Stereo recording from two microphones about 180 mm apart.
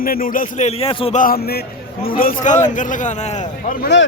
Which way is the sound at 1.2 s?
55° left (ahead or behind).